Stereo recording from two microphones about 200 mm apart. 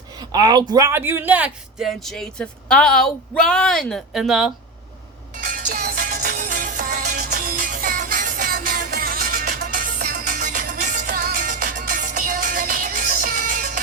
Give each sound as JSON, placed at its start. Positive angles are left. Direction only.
{"t": 0.2, "sound": "a man's voice", "side_deg": -20}
{"t": 5.5, "sound": "music", "side_deg": -45}